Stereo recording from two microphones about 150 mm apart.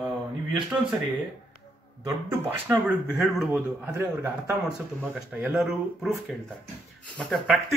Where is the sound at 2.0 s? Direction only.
15° right (ahead or behind).